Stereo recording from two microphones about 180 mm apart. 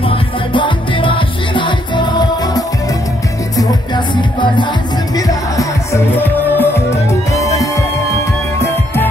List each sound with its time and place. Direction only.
0.1 s music: 25° left (ahead or behind)
5.1 s music: 20° left (ahead or behind)